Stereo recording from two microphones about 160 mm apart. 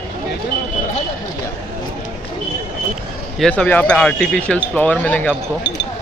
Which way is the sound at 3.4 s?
10° left (ahead or behind).